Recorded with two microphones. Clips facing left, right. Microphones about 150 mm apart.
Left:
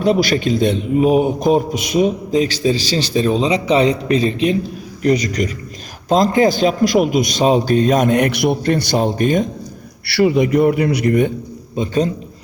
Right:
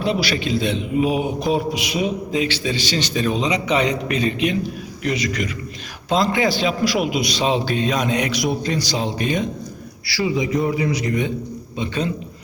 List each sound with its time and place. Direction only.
0.0 s a man's voice: 45° left (ahead or behind)
10.1 s a man's voice: 65° left (ahead or behind)
11.8 s a man's voice: 40° left (ahead or behind)